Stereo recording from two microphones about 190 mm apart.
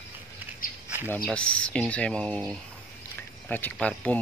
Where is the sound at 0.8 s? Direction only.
10° right (ahead or behind).